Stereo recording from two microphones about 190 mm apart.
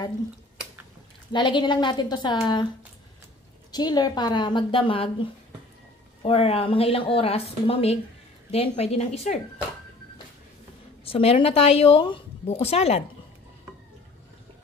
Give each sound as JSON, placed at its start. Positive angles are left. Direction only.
{"t": 1.3, "sound": "speech", "side_deg": 25}
{"t": 3.7, "sound": "a woman's voice", "side_deg": 20}
{"t": 11.1, "sound": "a woman's voice", "side_deg": 30}